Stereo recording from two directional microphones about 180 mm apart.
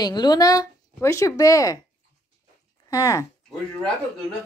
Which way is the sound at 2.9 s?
20° left (ahead or behind).